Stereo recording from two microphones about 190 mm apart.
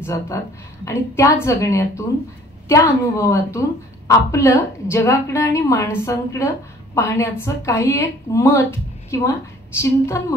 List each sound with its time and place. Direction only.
0.0 s a woman's voice: 15° left (ahead or behind)